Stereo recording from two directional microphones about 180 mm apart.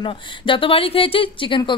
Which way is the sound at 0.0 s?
30° left (ahead or behind).